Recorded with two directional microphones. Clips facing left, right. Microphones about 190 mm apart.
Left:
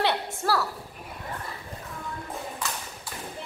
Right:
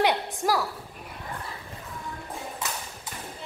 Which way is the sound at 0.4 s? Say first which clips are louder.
Even; 15° right (ahead or behind).